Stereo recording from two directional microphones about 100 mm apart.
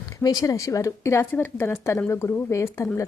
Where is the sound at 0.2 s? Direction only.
35° left (ahead or behind).